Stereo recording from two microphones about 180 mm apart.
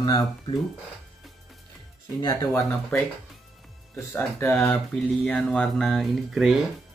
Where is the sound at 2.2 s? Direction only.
20° left (ahead or behind).